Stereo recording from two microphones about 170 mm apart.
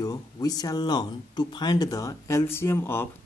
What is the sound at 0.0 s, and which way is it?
Speech, 20° left (ahead or behind).